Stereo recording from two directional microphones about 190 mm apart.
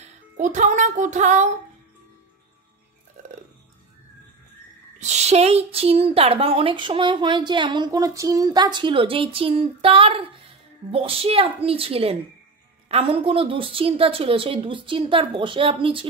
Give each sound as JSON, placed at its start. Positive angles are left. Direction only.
{"t": 0.0, "sound": "music", "side_deg": -40}
{"t": 4.9, "sound": "a woman's voice", "side_deg": -35}